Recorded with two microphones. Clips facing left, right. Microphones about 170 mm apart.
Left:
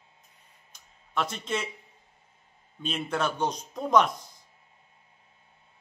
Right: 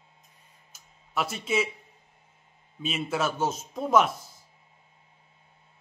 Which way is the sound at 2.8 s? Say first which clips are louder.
Right 1 dB; 5° right (ahead or behind).